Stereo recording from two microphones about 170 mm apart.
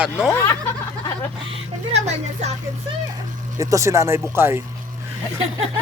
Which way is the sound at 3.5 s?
15° right (ahead or behind).